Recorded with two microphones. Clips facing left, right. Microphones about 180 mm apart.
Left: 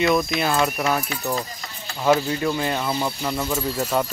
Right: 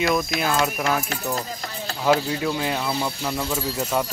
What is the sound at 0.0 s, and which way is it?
Speech, centre (ahead or behind).